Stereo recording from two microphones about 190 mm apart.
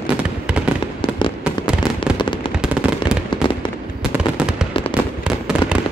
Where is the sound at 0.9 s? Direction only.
25° left (ahead or behind).